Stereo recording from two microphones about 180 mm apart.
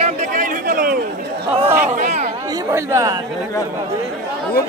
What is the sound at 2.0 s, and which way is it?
Speech, 40° right (ahead or behind).